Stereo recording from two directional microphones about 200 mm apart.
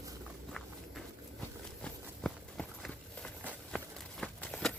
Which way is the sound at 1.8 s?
5° left (ahead or behind).